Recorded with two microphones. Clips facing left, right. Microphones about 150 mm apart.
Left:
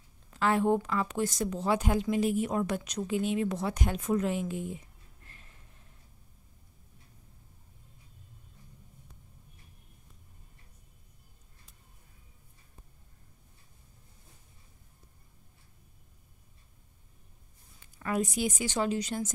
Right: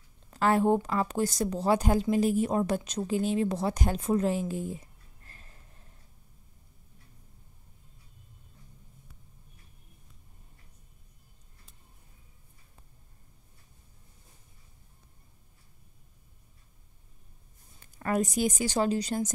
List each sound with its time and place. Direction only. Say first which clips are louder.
0.3 s a woman's voice: right 2 dB; 40° right (ahead or behind)
17.7 s a woman's voice: right 3 dB; 45° right (ahead or behind)